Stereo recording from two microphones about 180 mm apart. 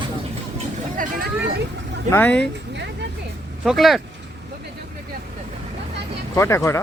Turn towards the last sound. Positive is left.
turn(degrees=15)  # may be behind; listen again after turning